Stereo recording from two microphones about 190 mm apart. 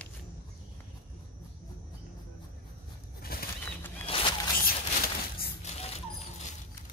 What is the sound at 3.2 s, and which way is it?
Bird flight, 50° left (ahead or behind).